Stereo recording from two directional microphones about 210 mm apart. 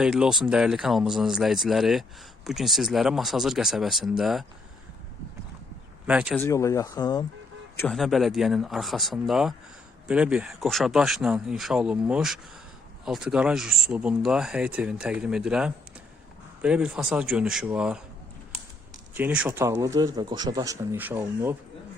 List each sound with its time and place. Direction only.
0.0 s speech: 5° right (ahead or behind)
6.1 s speech: 5° right (ahead or behind)
6.4 s speech: 15° left (ahead or behind)
7.8 s speech: centre (ahead or behind)
19.1 s a man's voice: 5° right (ahead or behind)